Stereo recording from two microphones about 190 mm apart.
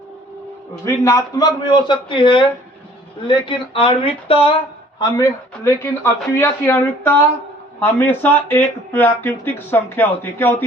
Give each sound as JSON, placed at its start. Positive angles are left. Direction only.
{"t": 0.9, "sound": "a man's voice", "side_deg": 15}
{"t": 4.9, "sound": "speech", "side_deg": 20}